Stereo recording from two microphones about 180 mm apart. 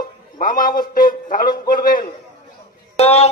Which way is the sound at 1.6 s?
50° left (ahead or behind).